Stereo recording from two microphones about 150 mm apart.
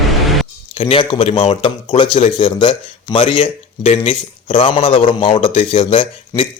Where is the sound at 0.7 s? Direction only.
35° left (ahead or behind).